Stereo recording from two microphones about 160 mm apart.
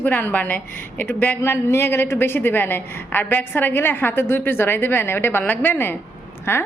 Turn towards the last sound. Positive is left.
turn(degrees=15)  # may be behind; listen again after turning